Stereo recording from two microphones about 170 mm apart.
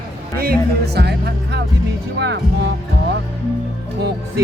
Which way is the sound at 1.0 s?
70° right (ahead or behind).